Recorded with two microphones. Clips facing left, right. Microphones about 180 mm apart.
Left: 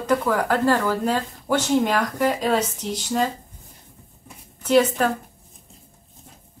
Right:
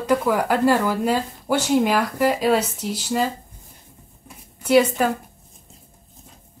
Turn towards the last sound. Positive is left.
turn(degrees=-10)  # may be behind; listen again after turning